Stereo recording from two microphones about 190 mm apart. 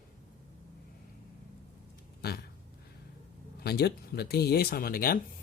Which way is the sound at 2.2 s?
55° left (ahead or behind).